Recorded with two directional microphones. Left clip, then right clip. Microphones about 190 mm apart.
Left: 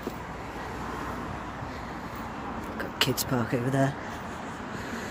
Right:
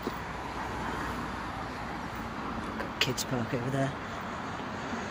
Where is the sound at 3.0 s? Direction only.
35° left (ahead or behind).